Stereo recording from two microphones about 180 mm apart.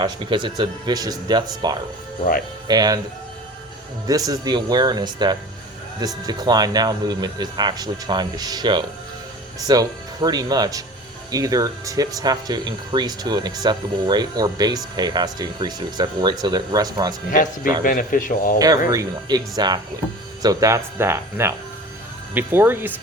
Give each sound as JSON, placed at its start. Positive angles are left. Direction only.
{"t": 0.0, "sound": "speech", "side_deg": -25}
{"t": 4.0, "sound": "speech", "side_deg": -20}
{"t": 17.3, "sound": "speech", "side_deg": 45}
{"t": 18.9, "sound": "speech", "side_deg": -20}